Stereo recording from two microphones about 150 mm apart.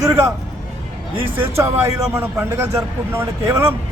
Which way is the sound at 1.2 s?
15° right (ahead or behind).